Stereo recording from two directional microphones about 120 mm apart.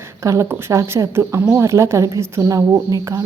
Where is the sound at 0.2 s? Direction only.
25° right (ahead or behind).